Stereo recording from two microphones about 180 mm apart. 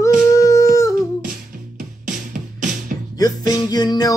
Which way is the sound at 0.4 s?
15° left (ahead or behind).